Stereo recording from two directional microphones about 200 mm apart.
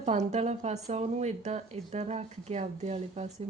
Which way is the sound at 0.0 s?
35° right (ahead or behind).